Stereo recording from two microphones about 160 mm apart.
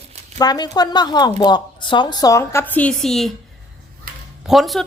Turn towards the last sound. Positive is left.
turn(degrees=0)  # may be behind; listen again after turning